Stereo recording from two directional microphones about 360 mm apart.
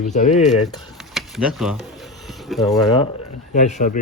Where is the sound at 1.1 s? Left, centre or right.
Centre.